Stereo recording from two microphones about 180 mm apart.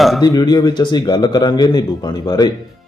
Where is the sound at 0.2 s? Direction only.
20° left (ahead or behind).